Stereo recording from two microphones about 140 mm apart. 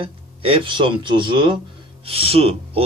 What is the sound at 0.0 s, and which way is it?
Speech, 40° right (ahead or behind).